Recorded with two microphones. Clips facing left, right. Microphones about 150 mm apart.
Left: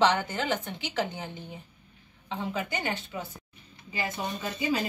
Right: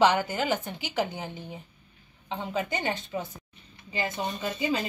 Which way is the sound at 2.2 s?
25° right (ahead or behind).